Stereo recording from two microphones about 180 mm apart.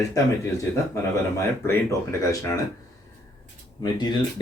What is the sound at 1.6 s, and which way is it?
Speech, 20° left (ahead or behind).